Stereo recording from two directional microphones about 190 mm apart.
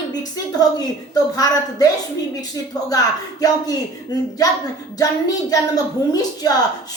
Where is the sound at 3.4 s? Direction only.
20° left (ahead or behind).